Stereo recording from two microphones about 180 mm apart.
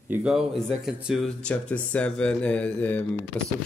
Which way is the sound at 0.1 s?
5° right (ahead or behind).